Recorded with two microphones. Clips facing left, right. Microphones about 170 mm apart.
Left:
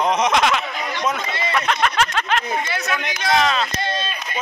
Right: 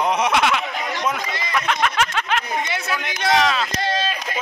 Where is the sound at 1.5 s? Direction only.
5° right (ahead or behind).